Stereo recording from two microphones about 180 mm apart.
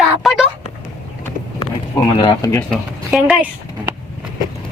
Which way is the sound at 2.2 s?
20° left (ahead or behind).